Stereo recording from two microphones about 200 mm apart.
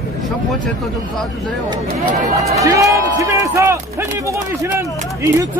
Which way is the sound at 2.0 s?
35° right (ahead or behind).